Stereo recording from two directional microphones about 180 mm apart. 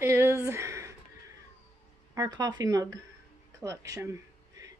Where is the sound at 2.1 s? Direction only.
20° right (ahead or behind).